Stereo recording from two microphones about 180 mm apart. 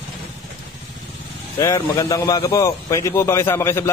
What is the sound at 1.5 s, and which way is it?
A man's voice, 20° left (ahead or behind).